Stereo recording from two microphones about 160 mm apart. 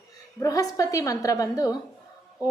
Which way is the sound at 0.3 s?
20° left (ahead or behind).